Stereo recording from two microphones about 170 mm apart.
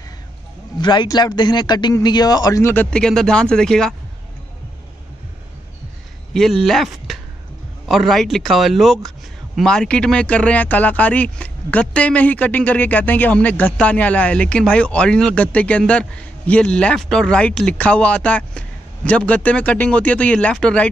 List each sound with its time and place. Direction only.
0.7 s speech: 25° left (ahead or behind); by 3.9 s 5° left (ahead or behind)
6.3 s speech: centre (ahead or behind)